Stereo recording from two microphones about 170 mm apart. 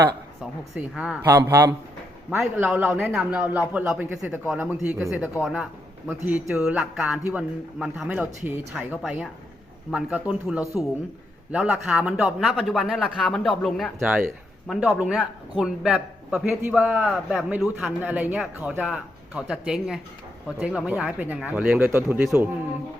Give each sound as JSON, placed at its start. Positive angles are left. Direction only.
{"t": 0.8, "sound": "a man's voice", "side_deg": -5}
{"t": 1.3, "sound": "a man's voice", "side_deg": -15}
{"t": 10.6, "sound": "speech", "side_deg": 20}
{"t": 11.5, "sound": "a man's voice", "side_deg": -5}